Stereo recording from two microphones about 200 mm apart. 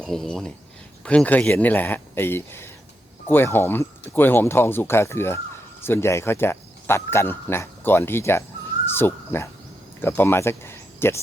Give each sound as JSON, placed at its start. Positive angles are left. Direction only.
{"t": 0.0, "sound": "speech", "side_deg": 0}